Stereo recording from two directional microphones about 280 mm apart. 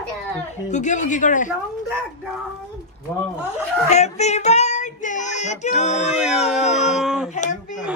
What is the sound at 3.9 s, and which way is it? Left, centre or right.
Child singing, left.